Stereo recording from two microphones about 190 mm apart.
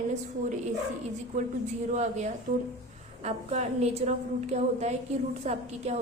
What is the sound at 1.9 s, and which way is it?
A woman's voice, 35° right (ahead or behind).